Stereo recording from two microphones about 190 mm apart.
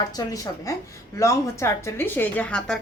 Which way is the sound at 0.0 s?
20° left (ahead or behind).